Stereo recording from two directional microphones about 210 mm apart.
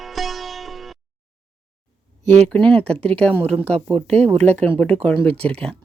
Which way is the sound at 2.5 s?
5° left (ahead or behind).